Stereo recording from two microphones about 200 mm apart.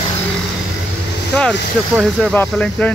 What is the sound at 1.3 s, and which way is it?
Speech, 5° left (ahead or behind).